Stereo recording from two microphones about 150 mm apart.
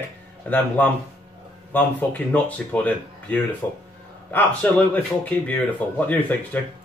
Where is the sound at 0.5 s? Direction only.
10° left (ahead or behind).